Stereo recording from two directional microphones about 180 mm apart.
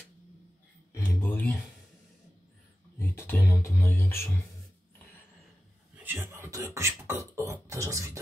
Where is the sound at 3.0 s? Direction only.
15° left (ahead or behind).